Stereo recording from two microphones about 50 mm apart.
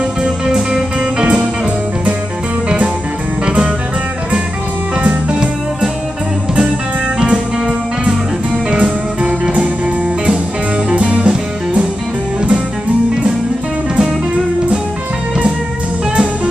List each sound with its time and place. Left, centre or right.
3.4 s music: right
5.0 s music: right
7.2 s music: centre
10.9 s music: right